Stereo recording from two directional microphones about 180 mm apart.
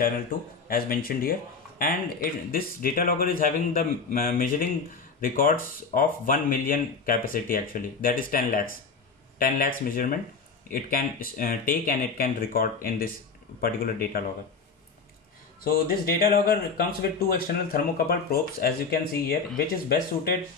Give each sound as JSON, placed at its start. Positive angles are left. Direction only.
{"t": 0.0, "sound": "speech", "side_deg": 55}
{"t": 15.6, "sound": "speech", "side_deg": 55}
{"t": 17.6, "sound": "speech", "side_deg": 55}